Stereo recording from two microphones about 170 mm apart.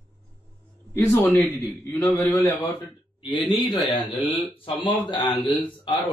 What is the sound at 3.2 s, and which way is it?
Speech, 30° left (ahead or behind).